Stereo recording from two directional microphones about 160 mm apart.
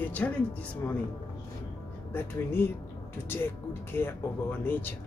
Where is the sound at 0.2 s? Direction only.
10° left (ahead or behind).